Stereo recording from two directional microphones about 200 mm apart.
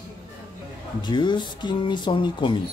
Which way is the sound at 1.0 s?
20° left (ahead or behind).